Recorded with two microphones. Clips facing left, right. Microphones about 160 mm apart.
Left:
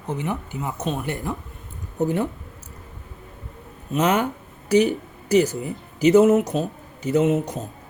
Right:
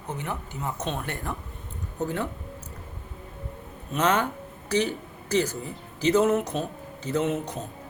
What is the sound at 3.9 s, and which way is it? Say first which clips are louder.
Speech: left 4 dB; 10° left (ahead or behind).